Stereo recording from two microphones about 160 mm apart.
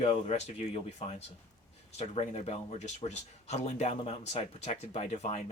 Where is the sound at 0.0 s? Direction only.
40° left (ahead or behind).